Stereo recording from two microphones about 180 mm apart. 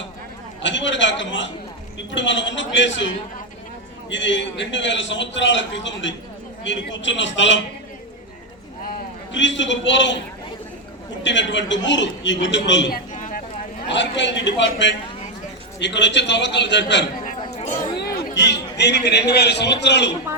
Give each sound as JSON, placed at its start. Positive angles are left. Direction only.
{"t": 0.6, "sound": "a man's voice", "side_deg": 90}
{"t": 4.1, "sound": "a man's voice", "side_deg": 90}
{"t": 9.3, "sound": "a man's voice", "side_deg": 90}
{"t": 11.2, "sound": "speech", "side_deg": 85}
{"t": 12.9, "sound": "a sound", "side_deg": 50}
{"t": 13.9, "sound": "a man's voice", "side_deg": 90}
{"t": 18.0, "sound": "a man's voice", "side_deg": 60}